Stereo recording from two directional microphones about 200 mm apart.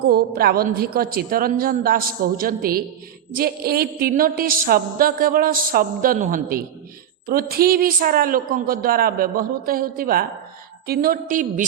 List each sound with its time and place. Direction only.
0.1 s speech: 50° right (ahead or behind)